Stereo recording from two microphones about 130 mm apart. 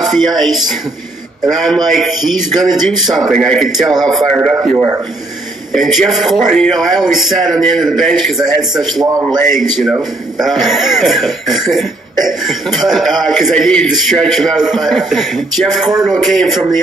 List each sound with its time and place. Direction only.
0.4 s speech: centre (ahead or behind)
1.9 s speech: centre (ahead or behind)
4.6 s a man's voice: 20° right (ahead or behind)
5.7 s speech: centre (ahead or behind)